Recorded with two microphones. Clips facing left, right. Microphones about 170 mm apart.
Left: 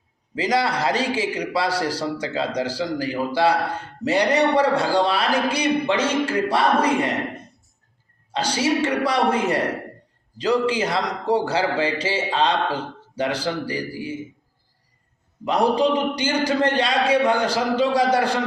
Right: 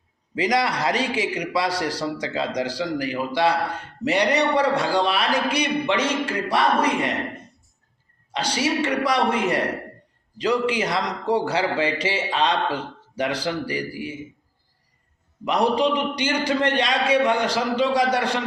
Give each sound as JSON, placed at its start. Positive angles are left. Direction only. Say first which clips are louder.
{"t": 0.3, "sound": "a man's voice", "louder": "even", "side_deg": 30}
{"t": 8.3, "sound": "a man's voice", "louder": "left 2 dB", "side_deg": 30}
{"t": 15.4, "sound": "a man's voice", "louder": "left 1 dB", "side_deg": 30}